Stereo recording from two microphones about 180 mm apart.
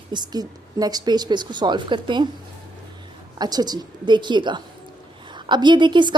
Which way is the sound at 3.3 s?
20° right (ahead or behind).